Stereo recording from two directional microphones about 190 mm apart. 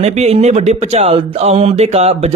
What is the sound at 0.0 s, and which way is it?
Speech, 35° right (ahead or behind).